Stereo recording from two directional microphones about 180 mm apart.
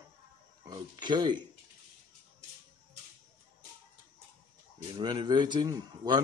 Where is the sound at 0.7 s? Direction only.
25° right (ahead or behind).